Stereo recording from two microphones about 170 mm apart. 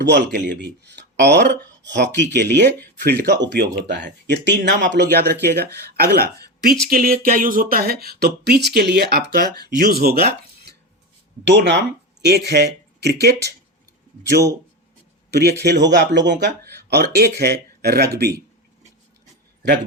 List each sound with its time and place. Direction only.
0.0 s speech: 85° right
3.0 s speech: 75° right (ahead or behind)
11.4 s speech: 90° right
15.3 s speech: 75° right (ahead or behind)
16.9 s speech: 70° right (ahead or behind)